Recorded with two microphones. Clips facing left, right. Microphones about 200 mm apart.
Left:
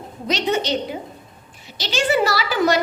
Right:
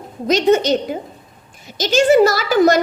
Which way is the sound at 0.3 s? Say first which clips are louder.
Right 8 dB; 45° right (ahead or behind).